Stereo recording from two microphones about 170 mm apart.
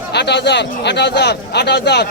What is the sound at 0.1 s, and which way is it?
A man's voice, 85° left.